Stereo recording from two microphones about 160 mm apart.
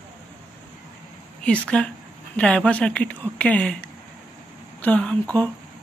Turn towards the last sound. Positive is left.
turn(degrees=5)  # may be behind; listen again after turning